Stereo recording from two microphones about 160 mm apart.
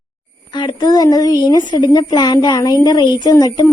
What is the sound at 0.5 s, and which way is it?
A woman's voice, 30° left (ahead or behind).